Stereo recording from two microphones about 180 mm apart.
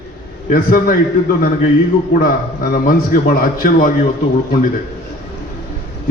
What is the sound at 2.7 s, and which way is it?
A man's voice, 55° left (ahead or behind).